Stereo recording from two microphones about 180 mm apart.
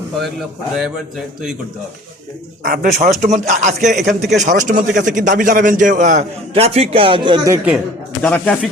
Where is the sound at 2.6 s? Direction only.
50° right (ahead or behind); by 7.5 s 25° right (ahead or behind).